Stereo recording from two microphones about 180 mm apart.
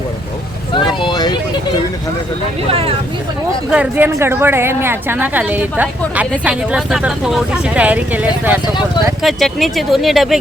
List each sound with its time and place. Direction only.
0.9 s vehicle: 25° left (ahead or behind)
2.6 s speech: 30° right (ahead or behind)
3.7 s a woman's voice: 10° right (ahead or behind)